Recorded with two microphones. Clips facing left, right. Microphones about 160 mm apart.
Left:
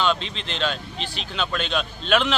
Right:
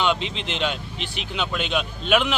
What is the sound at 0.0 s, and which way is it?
Speech, 15° right (ahead or behind).